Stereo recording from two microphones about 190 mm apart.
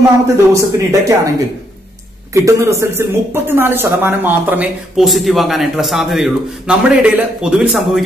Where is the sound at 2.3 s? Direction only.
15° right (ahead or behind).